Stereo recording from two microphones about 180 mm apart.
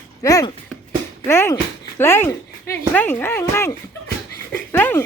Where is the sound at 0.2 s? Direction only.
20° left (ahead or behind).